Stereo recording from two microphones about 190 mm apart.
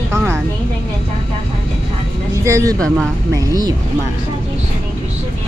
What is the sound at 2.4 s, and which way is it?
Speech, 15° right (ahead or behind).